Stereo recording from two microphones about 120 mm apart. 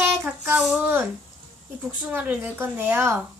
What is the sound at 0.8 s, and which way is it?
Speech, 20° right (ahead or behind).